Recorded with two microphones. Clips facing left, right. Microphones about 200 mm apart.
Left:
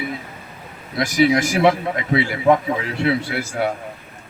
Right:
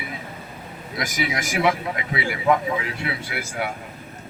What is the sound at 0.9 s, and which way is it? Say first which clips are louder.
A man's voice: left 10 dB; 35° left (ahead or behind).